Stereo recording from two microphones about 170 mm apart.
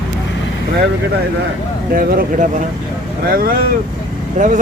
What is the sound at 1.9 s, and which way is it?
Speech, 55° right (ahead or behind).